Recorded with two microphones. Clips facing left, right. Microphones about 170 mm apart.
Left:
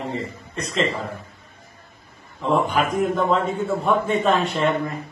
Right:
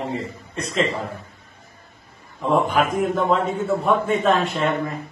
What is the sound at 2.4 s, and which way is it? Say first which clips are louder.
A man's voice: right 1 dB; centre (ahead or behind).